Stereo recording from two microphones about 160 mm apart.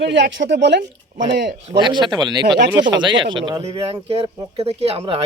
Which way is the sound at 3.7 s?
40° right (ahead or behind).